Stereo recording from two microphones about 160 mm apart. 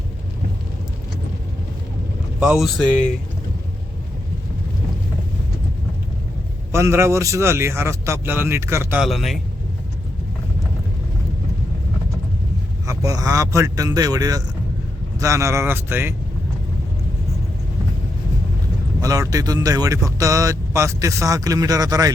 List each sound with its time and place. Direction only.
2.4 s speech: 5° right (ahead or behind)
6.7 s a man's voice: 15° right (ahead or behind)
9.0 s speech: centre (ahead or behind)
12.8 s a man's voice: 20° right (ahead or behind)
19.0 s speech: 20° right (ahead or behind)